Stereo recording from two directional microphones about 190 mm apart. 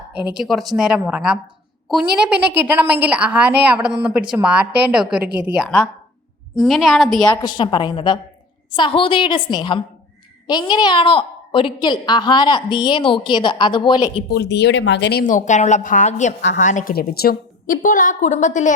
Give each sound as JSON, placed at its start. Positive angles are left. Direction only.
{"t": 0.3, "sound": "a woman's voice", "side_deg": 0}
{"t": 2.5, "sound": "a woman's voice", "side_deg": -10}
{"t": 7.4, "sound": "a woman's voice", "side_deg": 25}
{"t": 14.3, "sound": "speech", "side_deg": 60}
{"t": 15.2, "sound": "a woman's voice", "side_deg": 40}